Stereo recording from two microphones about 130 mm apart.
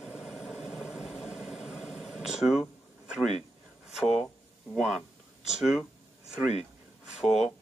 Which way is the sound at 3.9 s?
5° right (ahead or behind).